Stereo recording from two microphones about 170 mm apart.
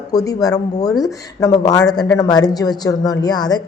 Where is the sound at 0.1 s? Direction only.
20° left (ahead or behind).